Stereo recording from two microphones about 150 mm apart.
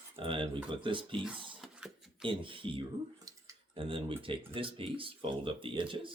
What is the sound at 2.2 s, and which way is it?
Speech, 35° right (ahead or behind).